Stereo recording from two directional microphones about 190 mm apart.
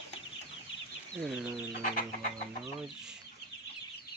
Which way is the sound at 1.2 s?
Centre (ahead or behind).